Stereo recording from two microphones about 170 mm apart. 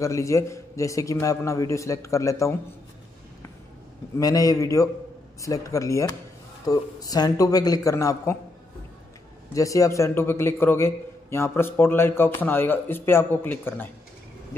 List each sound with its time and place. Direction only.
0.0 s a man's voice: 20° left (ahead or behind)
4.2 s a man's voice: 20° left (ahead or behind)
9.5 s a man's voice: 20° left (ahead or behind)